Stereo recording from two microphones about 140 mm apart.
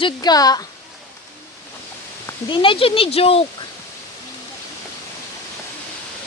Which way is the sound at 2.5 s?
40° left (ahead or behind).